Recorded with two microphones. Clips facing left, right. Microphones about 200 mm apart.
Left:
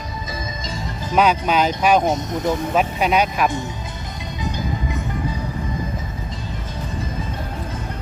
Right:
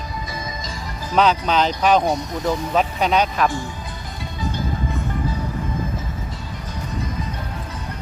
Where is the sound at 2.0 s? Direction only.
20° left (ahead or behind).